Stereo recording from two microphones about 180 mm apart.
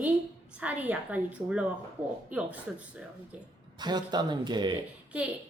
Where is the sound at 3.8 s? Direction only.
25° right (ahead or behind).